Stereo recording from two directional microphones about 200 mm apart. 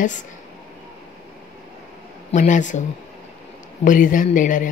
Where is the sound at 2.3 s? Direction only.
40° left (ahead or behind).